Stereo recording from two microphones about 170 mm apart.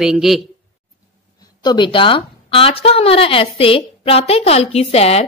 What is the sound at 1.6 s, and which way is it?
A woman's voice, 25° left (ahead or behind).